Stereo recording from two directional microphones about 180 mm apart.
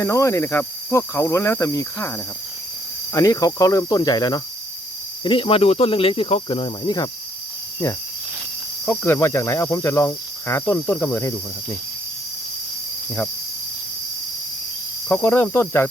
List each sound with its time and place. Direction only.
0.0 s speech: 15° left (ahead or behind)
8.9 s speech: 10° left (ahead or behind)
15.1 s speech: 10° left (ahead or behind)